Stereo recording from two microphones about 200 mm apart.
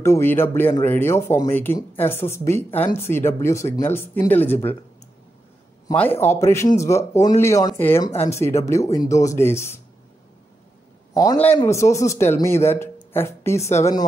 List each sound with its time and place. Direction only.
0.0 s speech: 10° left (ahead or behind)
5.9 s speech: 10° left (ahead or behind)
11.1 s speech: 15° left (ahead or behind)
13.6 s speech: 35° left (ahead or behind)